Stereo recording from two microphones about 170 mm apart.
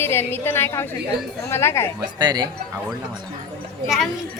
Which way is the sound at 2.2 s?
25° right (ahead or behind).